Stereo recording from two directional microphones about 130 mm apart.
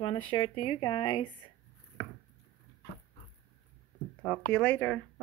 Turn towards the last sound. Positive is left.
turn(degrees=15)  # may be behind; listen again after turning